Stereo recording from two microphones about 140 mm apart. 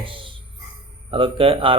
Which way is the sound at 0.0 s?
40° right (ahead or behind).